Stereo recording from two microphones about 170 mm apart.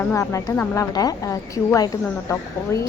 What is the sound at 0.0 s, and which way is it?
A woman's voice, 15° left (ahead or behind).